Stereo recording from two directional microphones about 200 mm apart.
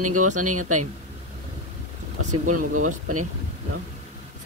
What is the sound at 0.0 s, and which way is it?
Speech, 90° right.